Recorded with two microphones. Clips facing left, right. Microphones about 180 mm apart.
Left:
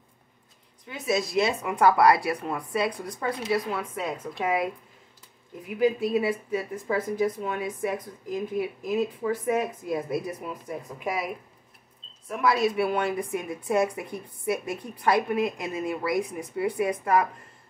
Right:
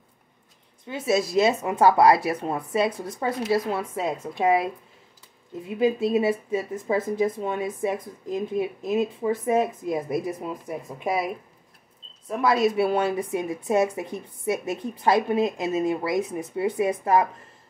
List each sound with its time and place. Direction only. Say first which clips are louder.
0.8 s speech: right 4 dB; 30° right (ahead or behind)
12.3 s speech: right 3 dB; 25° right (ahead or behind)